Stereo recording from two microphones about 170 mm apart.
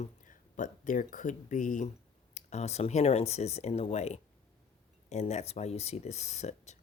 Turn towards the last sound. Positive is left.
turn(degrees=40)  # may be behind; listen again after turning